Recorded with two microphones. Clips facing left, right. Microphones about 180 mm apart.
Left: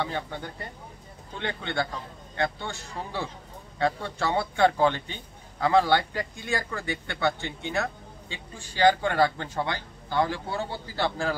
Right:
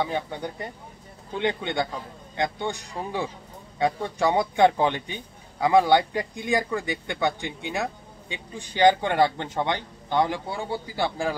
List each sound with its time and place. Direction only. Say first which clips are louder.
0.0 s a man's voice: right 4 dB; 15° right (ahead or behind)